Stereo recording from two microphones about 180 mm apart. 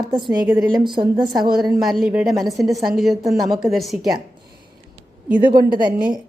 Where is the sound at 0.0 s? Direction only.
25° right (ahead or behind).